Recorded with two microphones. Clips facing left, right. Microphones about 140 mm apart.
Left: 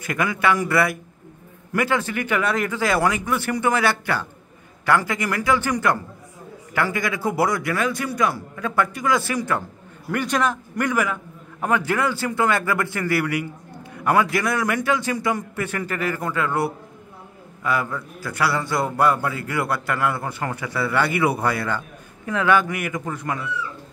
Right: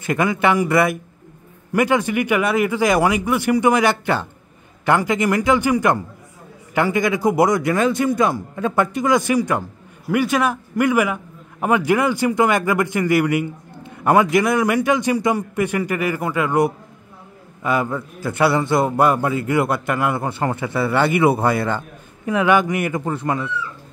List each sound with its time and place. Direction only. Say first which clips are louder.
0.0 s a man's voice: right 4 dB; 25° right (ahead or behind)